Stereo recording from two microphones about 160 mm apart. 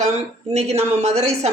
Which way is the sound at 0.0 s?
40° right (ahead or behind).